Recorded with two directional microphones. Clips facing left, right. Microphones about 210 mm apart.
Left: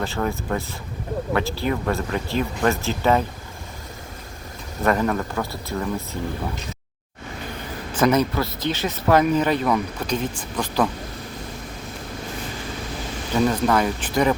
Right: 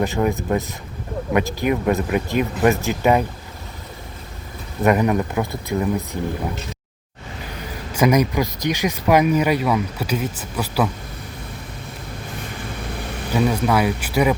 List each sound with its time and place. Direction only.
0.0 s speech: 15° right (ahead or behind)
4.8 s speech: 15° right (ahead or behind)
7.9 s speech: 10° right (ahead or behind)
13.3 s speech: 10° right (ahead or behind)